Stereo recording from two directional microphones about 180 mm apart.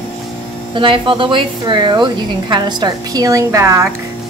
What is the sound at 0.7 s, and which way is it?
A woman's voice, 25° right (ahead or behind).